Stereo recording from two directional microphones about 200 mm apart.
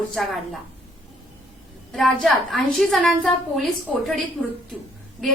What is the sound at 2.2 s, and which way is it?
A woman's voice, centre (ahead or behind).